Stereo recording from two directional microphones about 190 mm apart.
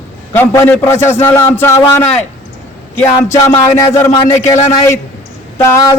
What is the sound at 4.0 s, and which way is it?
Speech, 15° left (ahead or behind).